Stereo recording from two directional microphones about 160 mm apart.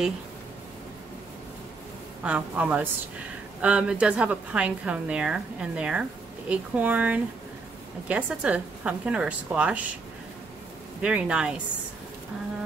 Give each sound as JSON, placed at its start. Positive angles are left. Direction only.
{"t": 2.2, "sound": "a woman's voice", "side_deg": -10}
{"t": 11.0, "sound": "a woman's voice", "side_deg": -5}